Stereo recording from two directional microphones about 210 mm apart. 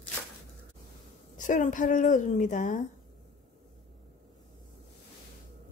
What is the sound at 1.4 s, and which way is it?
A woman's voice, 40° left (ahead or behind).